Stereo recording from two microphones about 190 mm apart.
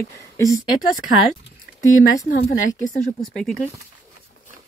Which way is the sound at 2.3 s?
50° left (ahead or behind).